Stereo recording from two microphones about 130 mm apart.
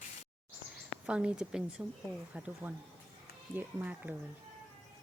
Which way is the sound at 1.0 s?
10° right (ahead or behind).